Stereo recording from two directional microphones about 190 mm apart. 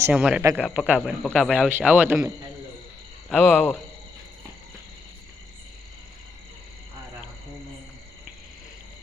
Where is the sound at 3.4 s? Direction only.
10° left (ahead or behind).